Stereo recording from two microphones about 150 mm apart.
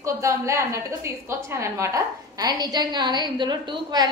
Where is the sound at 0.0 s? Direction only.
20° right (ahead or behind).